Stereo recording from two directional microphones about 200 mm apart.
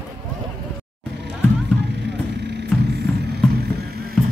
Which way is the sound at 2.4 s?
55° right (ahead or behind).